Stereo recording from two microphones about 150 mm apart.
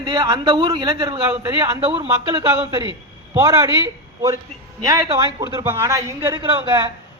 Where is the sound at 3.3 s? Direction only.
20° right (ahead or behind).